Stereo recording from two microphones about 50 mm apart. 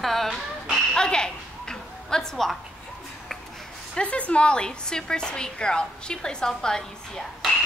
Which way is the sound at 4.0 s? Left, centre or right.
Left.